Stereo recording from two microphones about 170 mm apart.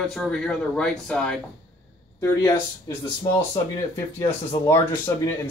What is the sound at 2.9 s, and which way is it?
Speech, 15° left (ahead or behind).